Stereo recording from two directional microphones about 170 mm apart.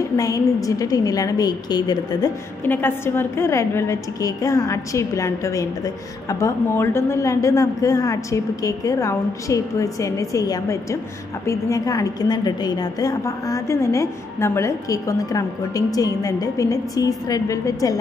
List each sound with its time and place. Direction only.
0.2 s a woman's voice: 20° left (ahead or behind)
2.6 s a woman's voice: 10° left (ahead or behind)